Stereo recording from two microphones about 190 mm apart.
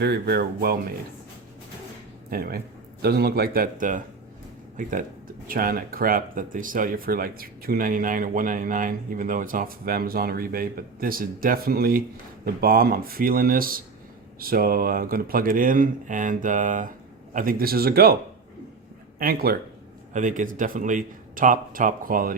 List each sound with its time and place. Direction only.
0.0 s speech: 55° right (ahead or behind)
2.3 s a man's voice: 50° right (ahead or behind)
19.2 s speech: 55° right (ahead or behind)
20.1 s speech: 40° right (ahead or behind)